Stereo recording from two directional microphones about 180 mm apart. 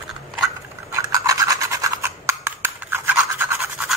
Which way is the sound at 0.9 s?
15° right (ahead or behind).